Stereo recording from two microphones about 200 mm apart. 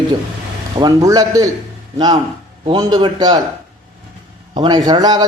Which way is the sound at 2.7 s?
20° right (ahead or behind).